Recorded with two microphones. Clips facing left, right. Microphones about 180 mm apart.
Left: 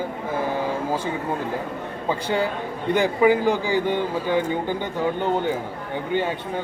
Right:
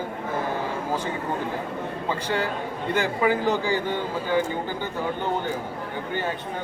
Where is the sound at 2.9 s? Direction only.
15° left (ahead or behind).